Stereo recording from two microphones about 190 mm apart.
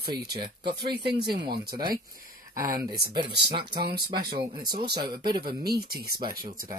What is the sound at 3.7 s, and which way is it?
Speech, 55° right (ahead or behind).